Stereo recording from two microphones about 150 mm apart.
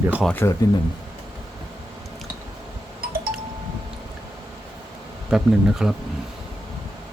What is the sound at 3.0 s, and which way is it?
Wind chime, 75° right (ahead or behind).